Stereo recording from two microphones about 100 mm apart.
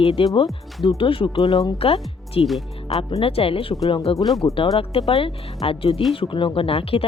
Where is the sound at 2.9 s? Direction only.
80° left.